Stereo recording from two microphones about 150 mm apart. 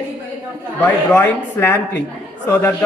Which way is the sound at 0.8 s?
15° left (ahead or behind).